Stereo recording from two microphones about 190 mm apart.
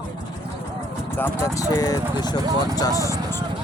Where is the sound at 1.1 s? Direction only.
10° left (ahead or behind).